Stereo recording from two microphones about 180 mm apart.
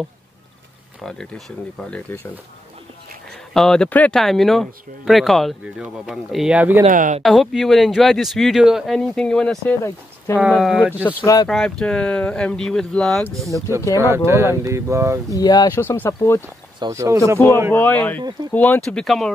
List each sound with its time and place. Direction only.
1.0 s speech: 5° left (ahead or behind)
3.5 s speech: 5° left (ahead or behind)
6.8 s speech: 45° right (ahead or behind)
7.2 s speech: centre (ahead or behind)
9.8 s speech: 15° left (ahead or behind)
10.5 s speech: 5° left (ahead or behind)
13.9 s speech: 15° right (ahead or behind)
15.3 s speech: 20° left (ahead or behind)
16.8 s speech: 15° right (ahead or behind)
17.7 s speech: 10° left (ahead or behind)